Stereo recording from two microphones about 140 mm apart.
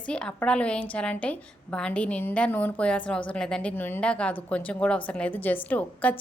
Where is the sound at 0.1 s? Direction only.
5° left (ahead or behind).